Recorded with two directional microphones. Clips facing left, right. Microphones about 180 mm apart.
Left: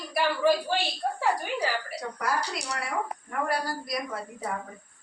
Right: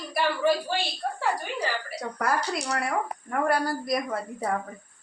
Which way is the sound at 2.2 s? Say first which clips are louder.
Right 4 dB; 55° right (ahead or behind).